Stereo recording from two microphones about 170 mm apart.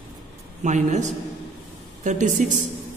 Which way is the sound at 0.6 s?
45° right (ahead or behind).